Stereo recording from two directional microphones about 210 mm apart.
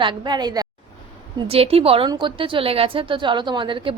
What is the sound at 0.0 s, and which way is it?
A woman's voice, 20° right (ahead or behind).